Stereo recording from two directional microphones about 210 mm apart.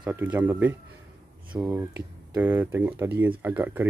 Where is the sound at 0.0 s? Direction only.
10° right (ahead or behind).